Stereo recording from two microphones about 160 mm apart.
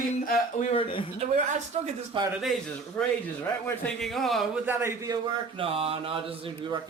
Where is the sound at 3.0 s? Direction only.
10° left (ahead or behind).